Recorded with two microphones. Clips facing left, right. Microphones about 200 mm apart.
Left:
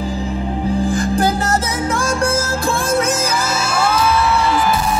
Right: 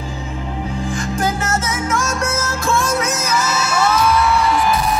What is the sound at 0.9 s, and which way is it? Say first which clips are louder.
Music: left 4 dB; 35° left (ahead or behind).